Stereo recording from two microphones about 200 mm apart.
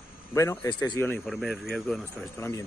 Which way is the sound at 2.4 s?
10° left (ahead or behind).